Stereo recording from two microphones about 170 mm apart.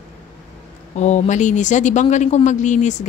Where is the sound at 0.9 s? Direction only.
45° left (ahead or behind).